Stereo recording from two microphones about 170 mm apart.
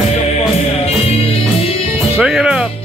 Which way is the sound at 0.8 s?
35° left (ahead or behind).